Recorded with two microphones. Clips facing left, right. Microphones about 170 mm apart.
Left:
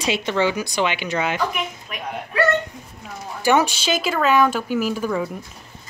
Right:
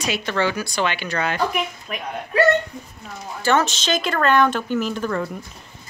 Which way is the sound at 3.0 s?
10° left (ahead or behind).